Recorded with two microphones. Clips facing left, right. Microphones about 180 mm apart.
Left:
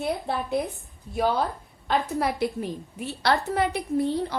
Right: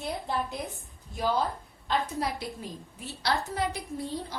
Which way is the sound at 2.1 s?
60° left (ahead or behind).